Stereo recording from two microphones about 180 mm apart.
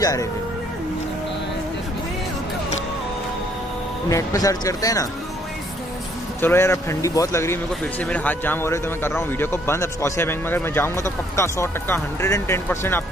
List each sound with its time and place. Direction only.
0.0 s speech: 20° left (ahead or behind)
4.1 s speech: 20° left (ahead or behind)
6.4 s speech: 15° left (ahead or behind)